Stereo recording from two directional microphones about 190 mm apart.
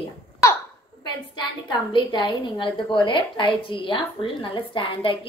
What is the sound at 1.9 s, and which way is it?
A woman's voice, 25° left (ahead or behind).